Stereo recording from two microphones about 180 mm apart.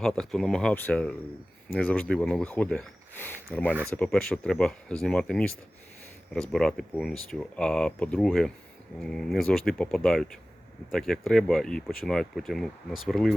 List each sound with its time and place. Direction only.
0.0 s speech: centre (ahead or behind)